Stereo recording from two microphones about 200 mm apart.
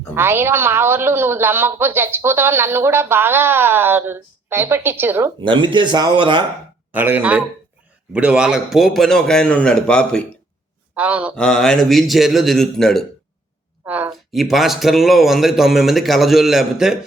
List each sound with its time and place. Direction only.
0.1 s a woman's voice: 10° right (ahead or behind)
5.4 s speech: 25° right (ahead or behind)
6.9 s a woman's voice: 10° right (ahead or behind)
10.9 s a woman's voice: 5° right (ahead or behind)
11.3 s a man's voice: 5° left (ahead or behind)